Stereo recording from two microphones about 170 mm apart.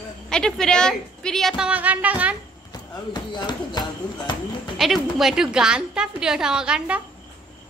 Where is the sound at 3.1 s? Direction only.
25° left (ahead or behind).